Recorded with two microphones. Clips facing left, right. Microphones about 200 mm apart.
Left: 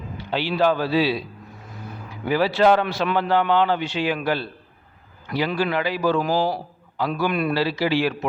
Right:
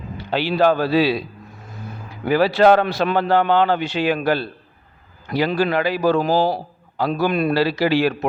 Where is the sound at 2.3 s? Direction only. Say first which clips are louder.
Right 4 dB; 45° right (ahead or behind).